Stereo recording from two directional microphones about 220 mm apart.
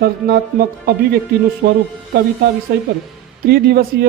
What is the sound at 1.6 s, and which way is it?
Speech, 45° right (ahead or behind).